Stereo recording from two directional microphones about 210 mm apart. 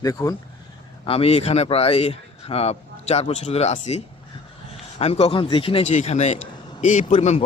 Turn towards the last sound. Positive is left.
turn(degrees=30)  # may be behind; listen again after turning